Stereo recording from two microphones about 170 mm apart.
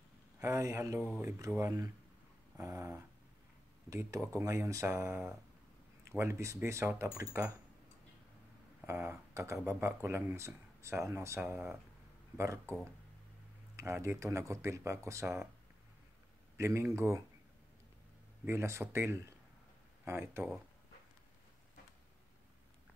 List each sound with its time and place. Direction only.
0.4 s speech: 15° right (ahead or behind)
2.5 s dog: 15° right (ahead or behind)
3.9 s speech: 15° right (ahead or behind)
8.8 s speech: 15° right (ahead or behind)
16.5 s speech: 15° right (ahead or behind)
18.4 s speech: 15° right (ahead or behind)